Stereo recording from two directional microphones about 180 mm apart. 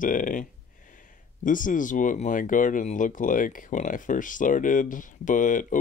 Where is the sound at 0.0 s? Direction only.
50° left (ahead or behind).